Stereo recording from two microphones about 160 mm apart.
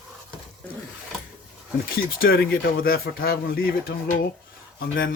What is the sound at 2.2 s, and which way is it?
Speech, 65° left (ahead or behind).